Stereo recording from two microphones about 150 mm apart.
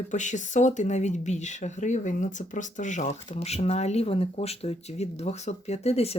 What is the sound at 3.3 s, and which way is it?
Speech, 45° left (ahead or behind).